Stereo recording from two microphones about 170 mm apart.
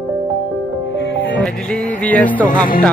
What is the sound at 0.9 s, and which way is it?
Music, 90° left.